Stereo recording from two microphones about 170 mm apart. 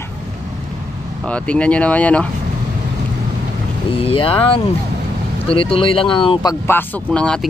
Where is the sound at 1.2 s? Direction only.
5° left (ahead or behind).